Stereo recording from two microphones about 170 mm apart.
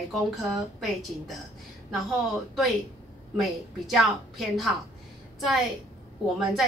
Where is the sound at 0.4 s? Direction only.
Centre (ahead or behind).